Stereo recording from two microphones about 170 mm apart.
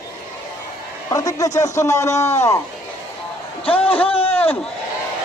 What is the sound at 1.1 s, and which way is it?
A man's voice, 20° left (ahead or behind).